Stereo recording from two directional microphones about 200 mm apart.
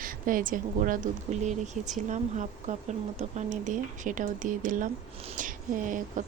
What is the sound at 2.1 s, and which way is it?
A woman's voice, 35° right (ahead or behind).